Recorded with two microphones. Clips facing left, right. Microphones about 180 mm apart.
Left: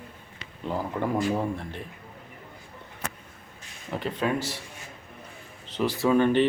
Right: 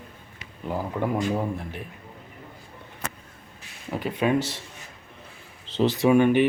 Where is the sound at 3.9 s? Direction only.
10° right (ahead or behind).